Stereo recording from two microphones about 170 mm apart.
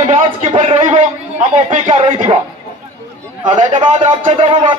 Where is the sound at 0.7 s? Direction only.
45° right (ahead or behind).